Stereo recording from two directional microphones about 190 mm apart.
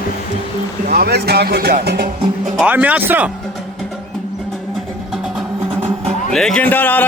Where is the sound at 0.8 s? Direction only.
55° right (ahead or behind).